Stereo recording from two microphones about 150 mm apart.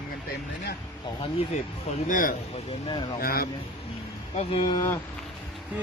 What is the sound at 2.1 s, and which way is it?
Speech, 65° left (ahead or behind).